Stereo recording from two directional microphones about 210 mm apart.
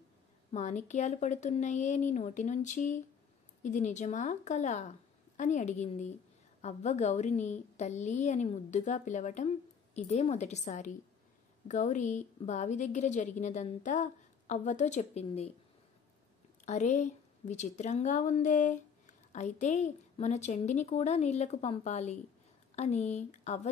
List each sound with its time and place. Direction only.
0.5 s a woman's voice: 35° left (ahead or behind)
16.6 s a woman's voice: 35° left (ahead or behind)